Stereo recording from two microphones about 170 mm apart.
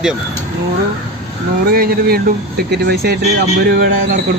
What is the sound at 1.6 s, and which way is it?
Speech, 65° right (ahead or behind).